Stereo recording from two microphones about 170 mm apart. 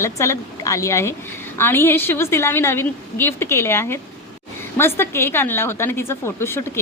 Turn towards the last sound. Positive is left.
turn(degrees=15)  # may be behind; listen again after turning